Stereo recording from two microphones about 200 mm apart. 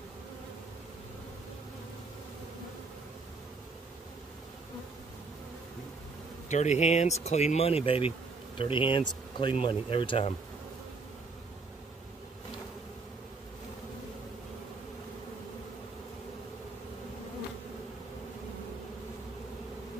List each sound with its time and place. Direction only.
6.5 s speech: 35° left (ahead or behind)